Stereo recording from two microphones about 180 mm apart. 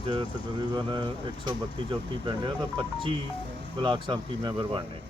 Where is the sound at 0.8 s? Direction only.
25° right (ahead or behind).